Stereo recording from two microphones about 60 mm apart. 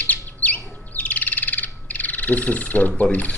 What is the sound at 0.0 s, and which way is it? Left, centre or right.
Bird, left.